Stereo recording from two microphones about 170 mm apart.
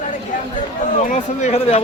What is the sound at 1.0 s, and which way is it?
Speech, 45° left (ahead or behind).